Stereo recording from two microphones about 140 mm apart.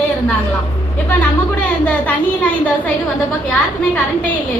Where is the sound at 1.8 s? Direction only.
10° left (ahead or behind).